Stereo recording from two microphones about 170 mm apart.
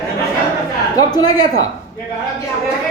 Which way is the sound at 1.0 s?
25° left (ahead or behind).